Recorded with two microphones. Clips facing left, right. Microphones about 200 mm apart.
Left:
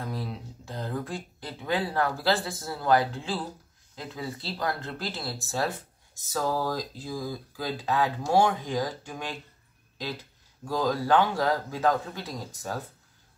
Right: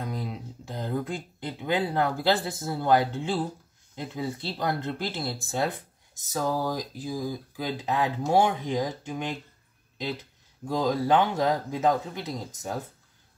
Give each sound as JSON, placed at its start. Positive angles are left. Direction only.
{"t": 0.0, "sound": "speech", "side_deg": -20}
{"t": 10.6, "sound": "speech", "side_deg": -20}